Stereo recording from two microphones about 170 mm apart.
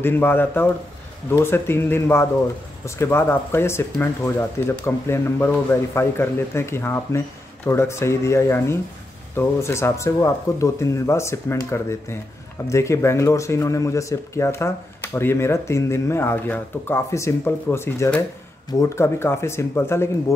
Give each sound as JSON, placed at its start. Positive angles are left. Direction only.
{"t": 0.0, "sound": "speech", "side_deg": 10}